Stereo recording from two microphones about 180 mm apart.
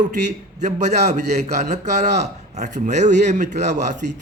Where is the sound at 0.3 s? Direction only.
40° right (ahead or behind).